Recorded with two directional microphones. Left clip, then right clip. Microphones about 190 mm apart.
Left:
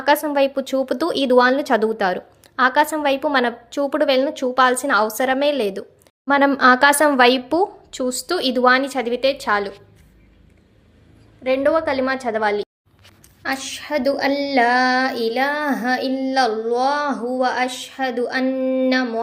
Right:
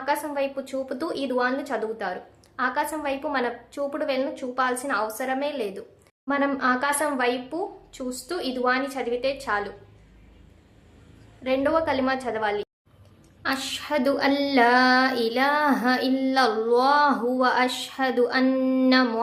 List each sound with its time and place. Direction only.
0.0 s speech: 45° left (ahead or behind)
11.4 s a woman's voice: 25° left (ahead or behind)
13.4 s speech: 10° left (ahead or behind)